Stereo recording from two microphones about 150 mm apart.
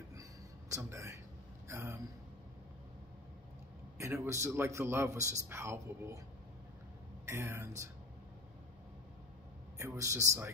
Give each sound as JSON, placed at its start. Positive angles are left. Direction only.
{"t": 0.1, "sound": "a sound", "side_deg": -20}
{"t": 1.7, "sound": "a man's voice", "side_deg": -15}
{"t": 4.0, "sound": "a man's voice", "side_deg": -15}
{"t": 7.2, "sound": "a man's voice", "side_deg": -15}
{"t": 9.8, "sound": "a man's voice", "side_deg": -20}